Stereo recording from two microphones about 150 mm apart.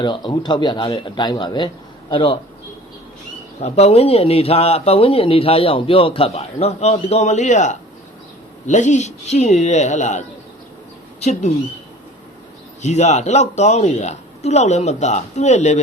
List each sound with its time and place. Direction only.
0.0 s speech: 30° left (ahead or behind)
3.6 s a man's voice: 45° left (ahead or behind)
12.8 s speech: 50° left (ahead or behind)